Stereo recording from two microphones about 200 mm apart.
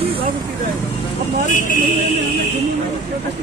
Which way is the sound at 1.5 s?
40° left (ahead or behind).